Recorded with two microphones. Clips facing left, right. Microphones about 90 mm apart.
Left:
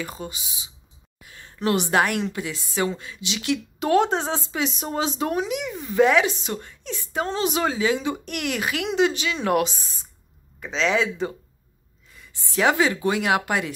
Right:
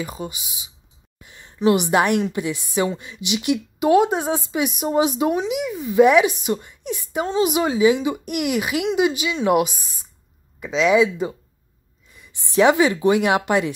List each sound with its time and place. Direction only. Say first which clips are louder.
0.0 s a woman's voice: right 3 dB; 15° right (ahead or behind)
1.2 s a sound: even; 20° right (ahead or behind)
1.6 s a woman's voice: right 4 dB; 15° right (ahead or behind)
10.8 s a woman's voice: right 6 dB; 15° right (ahead or behind)